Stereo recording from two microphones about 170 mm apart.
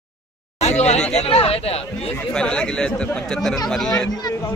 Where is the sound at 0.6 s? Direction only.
40° left (ahead or behind).